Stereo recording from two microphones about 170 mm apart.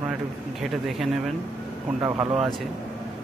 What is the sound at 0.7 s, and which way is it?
Speech, centre (ahead or behind).